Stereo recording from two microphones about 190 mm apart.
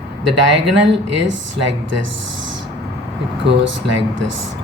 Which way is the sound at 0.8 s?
70° right (ahead or behind).